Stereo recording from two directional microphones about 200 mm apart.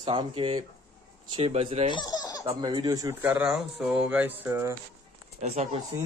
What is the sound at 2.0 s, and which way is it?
Baby laughter, 20° left (ahead or behind).